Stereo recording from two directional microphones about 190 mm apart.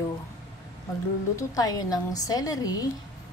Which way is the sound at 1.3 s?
20° left (ahead or behind).